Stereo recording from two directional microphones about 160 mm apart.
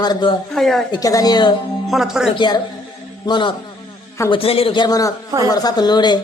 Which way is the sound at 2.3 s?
25° left (ahead or behind).